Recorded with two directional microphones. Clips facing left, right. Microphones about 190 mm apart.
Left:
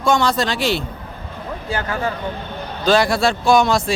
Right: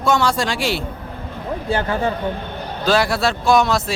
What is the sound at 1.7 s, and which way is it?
Speech, 30° right (ahead or behind).